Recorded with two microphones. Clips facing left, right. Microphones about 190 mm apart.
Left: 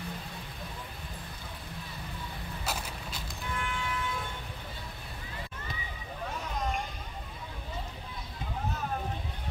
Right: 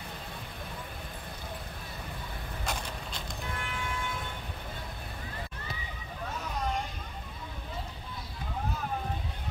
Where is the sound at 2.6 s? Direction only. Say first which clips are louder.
Right 1 dB; 5° left (ahead or behind).